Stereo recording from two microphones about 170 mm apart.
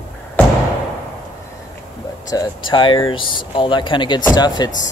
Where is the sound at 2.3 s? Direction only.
25° left (ahead or behind).